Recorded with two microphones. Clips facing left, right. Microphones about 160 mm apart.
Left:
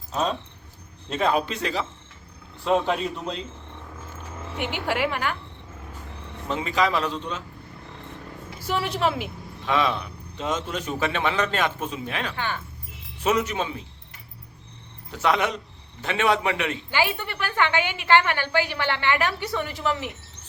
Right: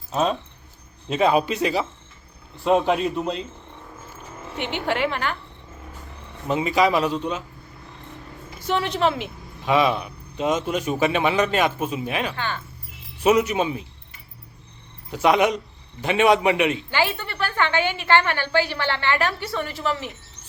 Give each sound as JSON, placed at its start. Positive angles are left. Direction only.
{"t": 0.1, "sound": "a man's voice", "side_deg": -5}
{"t": 4.5, "sound": "a woman's voice", "side_deg": 5}
{"t": 6.5, "sound": "a man's voice", "side_deg": -10}
{"t": 8.5, "sound": "a woman's voice", "side_deg": 5}
{"t": 9.6, "sound": "a man's voice", "side_deg": -10}
{"t": 15.1, "sound": "a man's voice", "side_deg": -15}
{"t": 16.9, "sound": "a woman's voice", "side_deg": 15}